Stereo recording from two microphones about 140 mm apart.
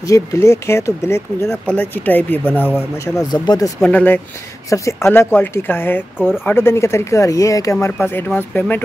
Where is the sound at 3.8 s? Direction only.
10° left (ahead or behind).